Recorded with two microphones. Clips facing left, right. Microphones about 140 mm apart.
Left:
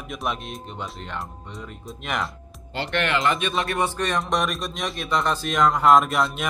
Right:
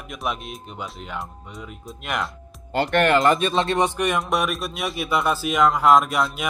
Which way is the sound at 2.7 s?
45° right (ahead or behind).